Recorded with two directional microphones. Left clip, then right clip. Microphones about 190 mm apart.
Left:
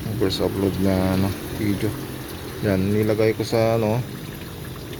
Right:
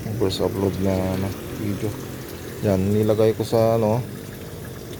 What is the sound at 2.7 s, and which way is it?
Speech, 15° right (ahead or behind).